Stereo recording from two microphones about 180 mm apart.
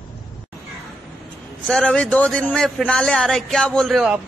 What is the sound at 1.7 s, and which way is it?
A man's voice, centre (ahead or behind).